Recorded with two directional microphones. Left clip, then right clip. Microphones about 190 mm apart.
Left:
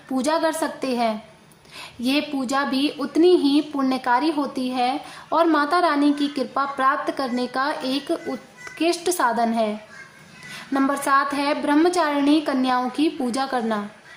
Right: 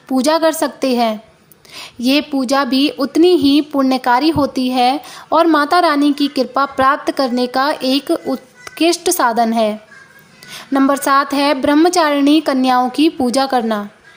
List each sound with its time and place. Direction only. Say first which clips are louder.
0.1 s speech: right 8 dB; 35° right (ahead or behind)